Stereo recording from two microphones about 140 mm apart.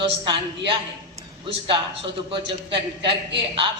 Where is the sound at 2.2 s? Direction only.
40° right (ahead or behind).